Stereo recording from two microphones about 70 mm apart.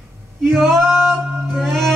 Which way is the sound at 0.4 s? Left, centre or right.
Centre.